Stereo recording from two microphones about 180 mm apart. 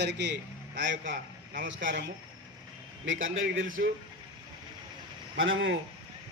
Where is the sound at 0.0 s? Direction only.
75° right (ahead or behind).